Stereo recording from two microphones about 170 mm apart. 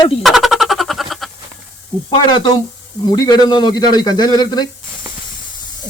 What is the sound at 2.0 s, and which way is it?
A man's voice, 25° left (ahead or behind).